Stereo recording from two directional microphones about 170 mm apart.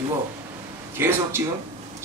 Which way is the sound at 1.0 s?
15° right (ahead or behind).